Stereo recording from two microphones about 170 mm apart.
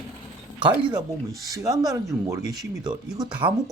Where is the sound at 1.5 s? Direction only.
20° right (ahead or behind).